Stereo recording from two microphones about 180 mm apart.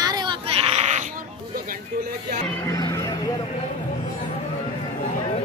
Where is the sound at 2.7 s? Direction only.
15° left (ahead or behind).